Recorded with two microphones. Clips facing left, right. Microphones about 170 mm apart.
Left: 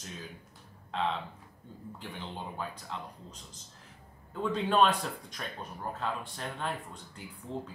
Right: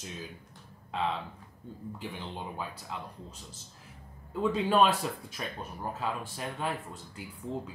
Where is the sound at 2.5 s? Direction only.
5° right (ahead or behind).